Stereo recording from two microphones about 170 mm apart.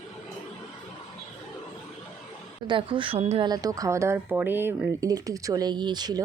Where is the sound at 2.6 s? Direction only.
30° right (ahead or behind).